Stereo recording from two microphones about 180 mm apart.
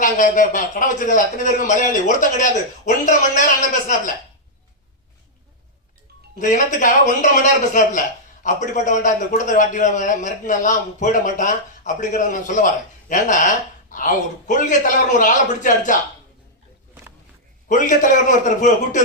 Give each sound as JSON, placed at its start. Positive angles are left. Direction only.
{"t": 0.0, "sound": "a man's voice", "side_deg": 45}
{"t": 6.4, "sound": "a man's voice", "side_deg": 45}
{"t": 17.7, "sound": "a man's voice", "side_deg": 45}